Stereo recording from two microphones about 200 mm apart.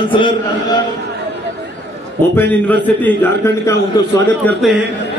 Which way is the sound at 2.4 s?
10° left (ahead or behind).